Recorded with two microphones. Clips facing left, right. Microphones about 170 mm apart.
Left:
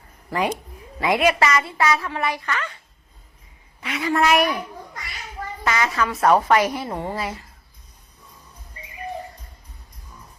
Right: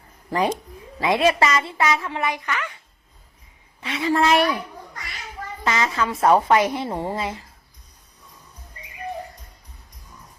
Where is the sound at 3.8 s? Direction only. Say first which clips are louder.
Right 1 dB; 25° right (ahead or behind).